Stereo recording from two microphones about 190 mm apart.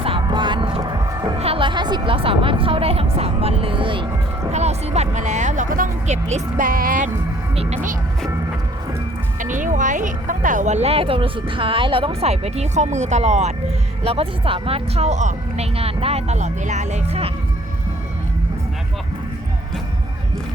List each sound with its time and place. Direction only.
0.0 s music: 25° right (ahead or behind)
1.4 s speech: 30° right (ahead or behind)
4.5 s speech: 35° right (ahead or behind)
7.5 s speech: 30° right (ahead or behind)
9.4 s speech: 45° right (ahead or behind)